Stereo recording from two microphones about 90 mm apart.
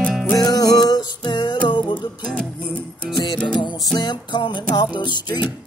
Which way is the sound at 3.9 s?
55° left (ahead or behind).